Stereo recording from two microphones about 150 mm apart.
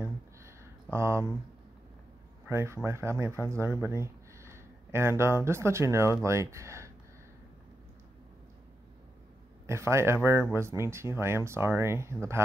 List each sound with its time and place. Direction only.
0.8 s speech: 20° right (ahead or behind)
2.4 s speech: 15° right (ahead or behind)
9.7 s speech: 20° right (ahead or behind)